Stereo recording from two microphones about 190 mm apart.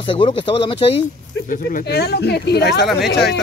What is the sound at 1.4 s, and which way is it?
Speech, 45° left (ahead or behind).